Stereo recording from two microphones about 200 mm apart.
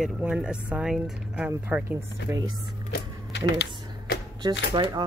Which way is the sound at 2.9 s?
60° left (ahead or behind).